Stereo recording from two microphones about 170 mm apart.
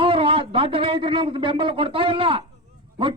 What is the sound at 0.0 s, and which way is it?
A man's voice, 30° right (ahead or behind).